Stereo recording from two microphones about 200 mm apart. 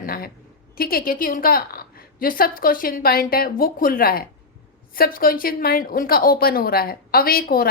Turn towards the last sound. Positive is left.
turn(degrees=45)  # may be behind; listen again after turning